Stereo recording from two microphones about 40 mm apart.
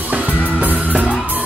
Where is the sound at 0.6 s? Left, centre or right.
Right.